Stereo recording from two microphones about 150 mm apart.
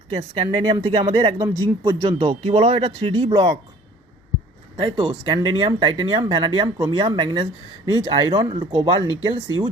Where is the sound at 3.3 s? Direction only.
25° right (ahead or behind).